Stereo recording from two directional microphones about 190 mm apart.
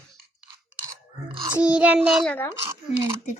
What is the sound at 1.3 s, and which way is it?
Speech, 25° right (ahead or behind).